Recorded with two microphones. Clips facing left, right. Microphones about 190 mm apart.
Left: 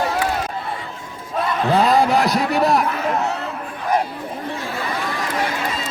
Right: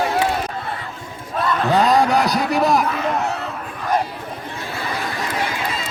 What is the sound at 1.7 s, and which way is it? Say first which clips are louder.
A man's voice: even; centre (ahead or behind).